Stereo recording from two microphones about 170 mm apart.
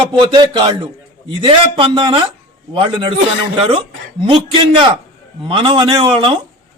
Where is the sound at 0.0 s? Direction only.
30° right (ahead or behind).